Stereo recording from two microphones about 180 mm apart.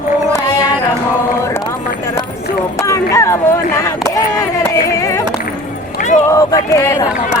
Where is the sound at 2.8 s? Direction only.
15° left (ahead or behind).